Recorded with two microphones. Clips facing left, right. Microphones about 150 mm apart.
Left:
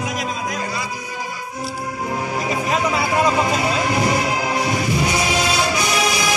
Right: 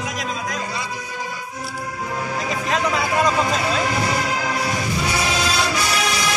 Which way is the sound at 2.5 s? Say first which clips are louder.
Left 2 dB; 10° left (ahead or behind).